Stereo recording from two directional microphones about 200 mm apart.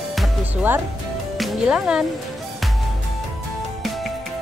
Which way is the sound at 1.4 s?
Centre (ahead or behind).